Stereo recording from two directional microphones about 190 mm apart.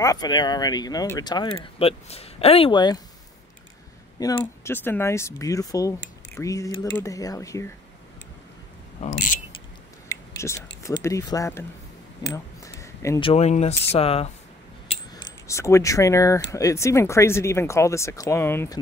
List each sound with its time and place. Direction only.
0.0 s speech: 20° left (ahead or behind)
4.2 s speech: 15° left (ahead or behind)
10.0 s speech: 15° left (ahead or behind)
12.2 s a sound: 15° left (ahead or behind)
13.2 s speech: 35° left (ahead or behind)
15.4 s speech: 15° left (ahead or behind)